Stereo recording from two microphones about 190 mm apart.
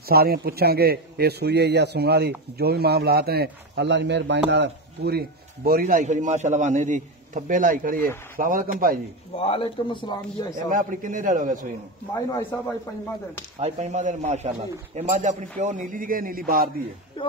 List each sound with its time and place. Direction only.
0.1 s a man's voice: 55° right (ahead or behind)
9.4 s speech: 30° left (ahead or behind)
10.7 s speech: 45° right (ahead or behind)
12.1 s speech: 15° left (ahead or behind)
13.6 s speech: 35° right (ahead or behind)